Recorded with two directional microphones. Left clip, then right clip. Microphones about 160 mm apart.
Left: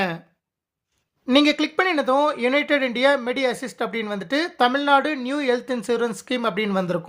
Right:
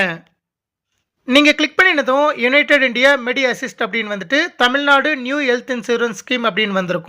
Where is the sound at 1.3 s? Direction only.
10° right (ahead or behind).